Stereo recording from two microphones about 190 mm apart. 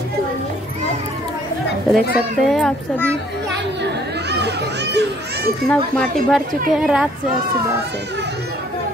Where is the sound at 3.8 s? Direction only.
60° right (ahead or behind).